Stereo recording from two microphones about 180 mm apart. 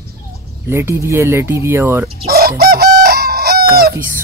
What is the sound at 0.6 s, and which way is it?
Speech, 15° right (ahead or behind).